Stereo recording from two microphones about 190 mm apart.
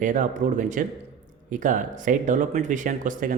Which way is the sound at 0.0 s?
40° right (ahead or behind).